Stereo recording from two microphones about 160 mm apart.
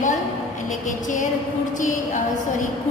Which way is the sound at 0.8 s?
55° left (ahead or behind).